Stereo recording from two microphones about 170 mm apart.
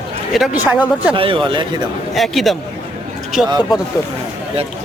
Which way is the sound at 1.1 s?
30° right (ahead or behind).